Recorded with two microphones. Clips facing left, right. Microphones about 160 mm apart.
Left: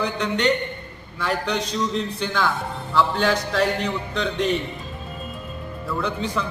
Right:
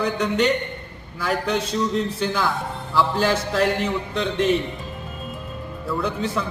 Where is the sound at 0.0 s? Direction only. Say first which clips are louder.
Right 2 dB; 10° right (ahead or behind).